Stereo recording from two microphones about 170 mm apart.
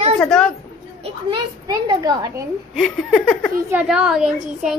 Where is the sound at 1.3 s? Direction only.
25° right (ahead or behind).